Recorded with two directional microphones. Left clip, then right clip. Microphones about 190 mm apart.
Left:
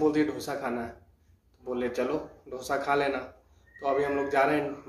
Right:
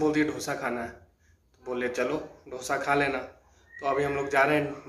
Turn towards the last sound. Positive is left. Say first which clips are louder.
# right 1 dB
turn(degrees=5)  # may be behind; listen again after turning